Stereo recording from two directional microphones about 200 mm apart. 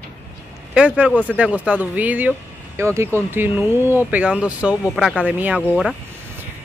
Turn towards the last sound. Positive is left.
turn(degrees=-5)  # may be behind; listen again after turning